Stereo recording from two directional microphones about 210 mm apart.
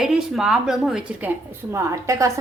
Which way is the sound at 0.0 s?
Centre (ahead or behind).